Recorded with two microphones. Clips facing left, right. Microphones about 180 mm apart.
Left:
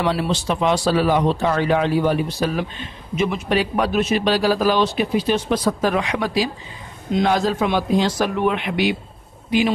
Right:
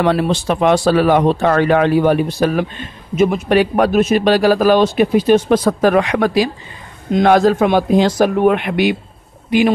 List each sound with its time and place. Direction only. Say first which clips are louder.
0.0 s speech: right 6 dB; 55° right (ahead or behind)